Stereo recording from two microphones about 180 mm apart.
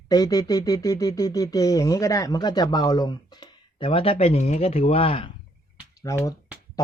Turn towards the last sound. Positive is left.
turn(degrees=15)  # may be behind; listen again after turning